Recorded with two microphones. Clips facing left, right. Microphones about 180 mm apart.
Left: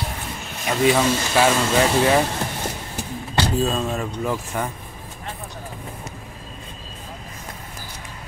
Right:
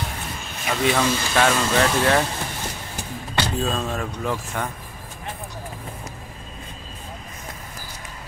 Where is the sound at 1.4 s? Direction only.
10° left (ahead or behind).